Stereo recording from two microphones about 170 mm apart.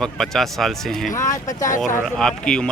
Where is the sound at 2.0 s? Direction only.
5° left (ahead or behind).